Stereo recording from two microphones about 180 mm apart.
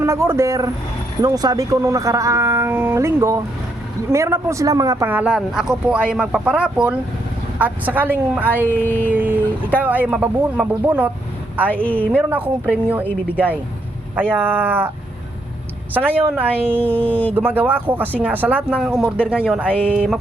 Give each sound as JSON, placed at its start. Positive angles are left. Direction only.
{"t": 0.0, "sound": "a man's voice", "side_deg": -15}
{"t": 8.6, "sound": "a sound", "side_deg": 10}
{"t": 9.0, "sound": "a man's voice", "side_deg": -10}
{"t": 11.7, "sound": "a sound", "side_deg": 10}
{"t": 12.1, "sound": "a man's voice", "side_deg": -10}
{"t": 14.2, "sound": "a man's voice", "side_deg": -10}
{"t": 16.0, "sound": "a man's voice", "side_deg": -10}
{"t": 17.1, "sound": "a sound", "side_deg": 10}
{"t": 17.3, "sound": "a man's voice", "side_deg": -10}